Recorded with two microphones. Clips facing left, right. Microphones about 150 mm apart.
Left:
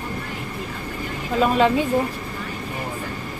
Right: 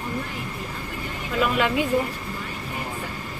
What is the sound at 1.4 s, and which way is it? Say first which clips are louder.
Speech: left 4 dB; 30° left (ahead or behind).